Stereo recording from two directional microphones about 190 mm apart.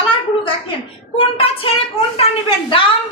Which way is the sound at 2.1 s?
30° left (ahead or behind).